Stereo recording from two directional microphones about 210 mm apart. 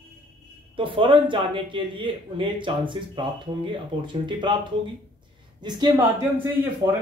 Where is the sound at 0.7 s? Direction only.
25° right (ahead or behind).